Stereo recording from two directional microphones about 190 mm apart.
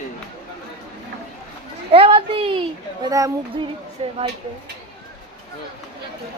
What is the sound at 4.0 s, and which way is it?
Speech, 30° right (ahead or behind).